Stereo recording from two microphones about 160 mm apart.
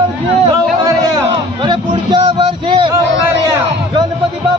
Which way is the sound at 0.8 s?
30° right (ahead or behind).